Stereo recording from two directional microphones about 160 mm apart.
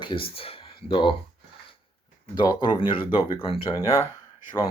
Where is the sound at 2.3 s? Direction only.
30° left (ahead or behind).